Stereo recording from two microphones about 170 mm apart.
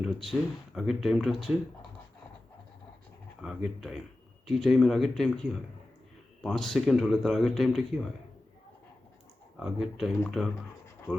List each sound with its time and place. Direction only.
0.3 s speech: centre (ahead or behind)
3.4 s speech: centre (ahead or behind)
9.6 s speech: 5° right (ahead or behind)